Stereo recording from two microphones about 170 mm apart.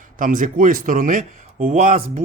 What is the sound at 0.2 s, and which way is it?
Speech, 50° right (ahead or behind).